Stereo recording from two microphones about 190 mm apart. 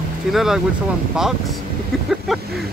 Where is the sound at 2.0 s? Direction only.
Centre (ahead or behind).